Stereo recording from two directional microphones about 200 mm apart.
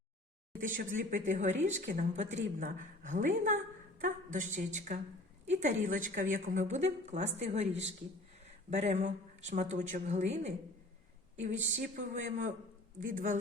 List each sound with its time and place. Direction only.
0.8 s a woman's voice: 40° right (ahead or behind)
11.8 s a woman's voice: 40° right (ahead or behind)